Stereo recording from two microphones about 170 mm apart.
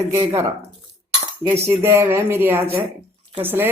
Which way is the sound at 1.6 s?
15° right (ahead or behind).